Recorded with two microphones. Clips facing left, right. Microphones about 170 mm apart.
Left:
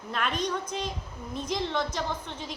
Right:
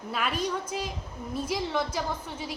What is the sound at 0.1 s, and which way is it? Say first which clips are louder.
A woman's voice: even; 5° right (ahead or behind).